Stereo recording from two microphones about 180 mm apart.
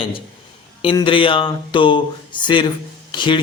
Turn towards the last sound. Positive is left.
turn(degrees=25)  # may be behind; listen again after turning